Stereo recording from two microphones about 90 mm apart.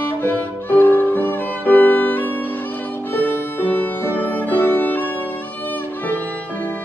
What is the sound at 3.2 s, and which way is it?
Music, 20° left (ahead or behind).